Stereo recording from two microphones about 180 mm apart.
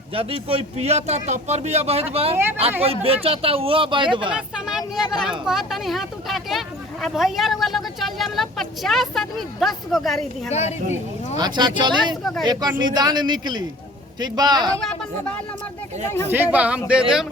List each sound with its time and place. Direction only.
0.1 s a man's voice: 30° right (ahead or behind)
2.3 s speech: 15° right (ahead or behind)
2.8 s a man's voice: 35° right (ahead or behind)
4.3 s speech: 5° right (ahead or behind)
4.8 s speech: 20° left (ahead or behind)
5.2 s speech: centre (ahead or behind)
10.5 s speech: 35° left (ahead or behind)
11.3 s speech: 25° right (ahead or behind)
12.2 s speech: centre (ahead or behind)
12.5 s speech: 20° right (ahead or behind)
16.3 s speech: 10° right (ahead or behind)